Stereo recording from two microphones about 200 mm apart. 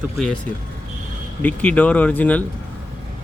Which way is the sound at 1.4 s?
10° left (ahead or behind).